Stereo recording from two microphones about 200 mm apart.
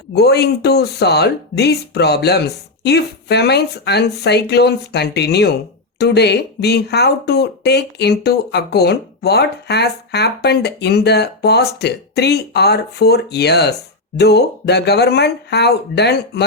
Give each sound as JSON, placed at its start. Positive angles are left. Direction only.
{"t": 0.1, "sound": "speech", "side_deg": 55}